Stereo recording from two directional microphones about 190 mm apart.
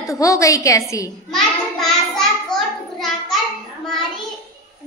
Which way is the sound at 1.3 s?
Centre (ahead or behind).